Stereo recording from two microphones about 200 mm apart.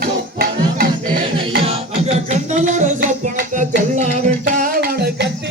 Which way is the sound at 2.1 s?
35° right (ahead or behind).